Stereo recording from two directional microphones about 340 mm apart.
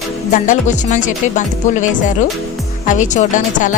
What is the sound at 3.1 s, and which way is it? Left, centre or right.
Speech, left.